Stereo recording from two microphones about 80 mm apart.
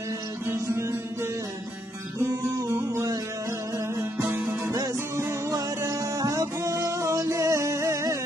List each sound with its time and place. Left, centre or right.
0.5 s music: right
2.7 s music: right
4.3 s music: right
4.6 s music: right
4.9 s music: right
5.5 s music: right